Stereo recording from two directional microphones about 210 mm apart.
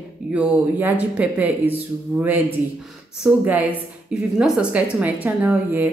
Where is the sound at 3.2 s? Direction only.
10° right (ahead or behind).